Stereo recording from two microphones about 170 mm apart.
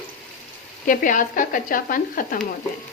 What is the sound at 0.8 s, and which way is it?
A woman's voice, 50° left (ahead or behind).